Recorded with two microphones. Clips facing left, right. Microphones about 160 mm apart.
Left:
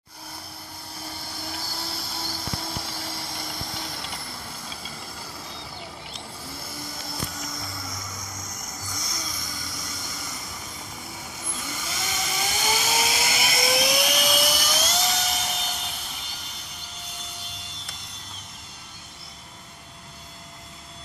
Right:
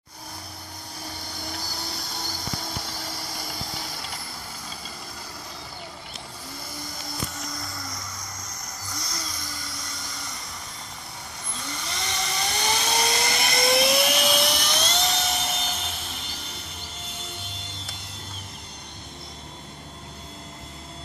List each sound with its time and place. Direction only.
1.0 s vehicle: 5° left (ahead or behind)
6.5 s music: 5° left (ahead or behind)
8.0 s vehicle: 20° left (ahead or behind)
9.2 s a sound: centre (ahead or behind)
11.5 s vehicle: 5° left (ahead or behind)